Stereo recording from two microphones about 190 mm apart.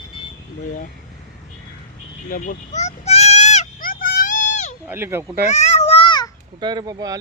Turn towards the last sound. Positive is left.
turn(degrees=-20)  # may be behind; listen again after turning